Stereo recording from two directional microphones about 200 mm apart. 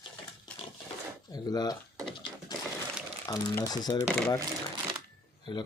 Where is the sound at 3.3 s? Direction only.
20° left (ahead or behind).